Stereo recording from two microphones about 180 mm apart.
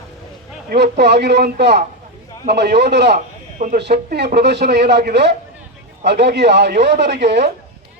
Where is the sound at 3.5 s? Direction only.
50° right (ahead or behind).